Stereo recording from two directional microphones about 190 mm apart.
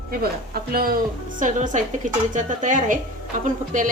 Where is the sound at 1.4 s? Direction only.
40° right (ahead or behind).